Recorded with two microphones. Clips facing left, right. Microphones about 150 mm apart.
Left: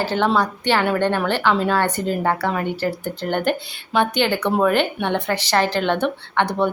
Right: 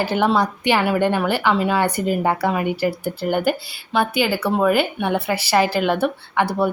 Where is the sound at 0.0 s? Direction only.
15° right (ahead or behind).